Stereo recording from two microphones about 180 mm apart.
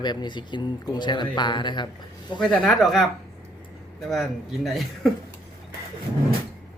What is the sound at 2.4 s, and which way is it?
Speech, centre (ahead or behind).